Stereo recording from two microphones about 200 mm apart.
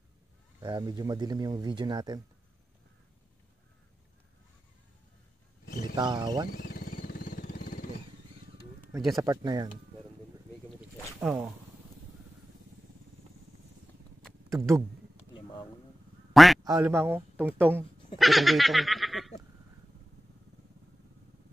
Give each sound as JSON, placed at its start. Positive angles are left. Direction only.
{"t": 0.6, "sound": "speech", "side_deg": -20}
{"t": 5.9, "sound": "speech", "side_deg": -20}
{"t": 6.5, "sound": "vehicle", "side_deg": 45}
{"t": 9.1, "sound": "speech", "side_deg": -20}
{"t": 11.1, "sound": "speech", "side_deg": -5}
{"t": 14.5, "sound": "speech", "side_deg": -15}
{"t": 15.3, "sound": "a sound", "side_deg": 20}
{"t": 16.6, "sound": "speech", "side_deg": -15}
{"t": 18.1, "sound": "goat", "side_deg": 0}